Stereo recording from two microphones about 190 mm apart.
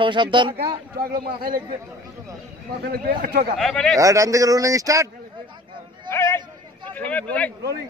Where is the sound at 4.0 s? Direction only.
15° right (ahead or behind).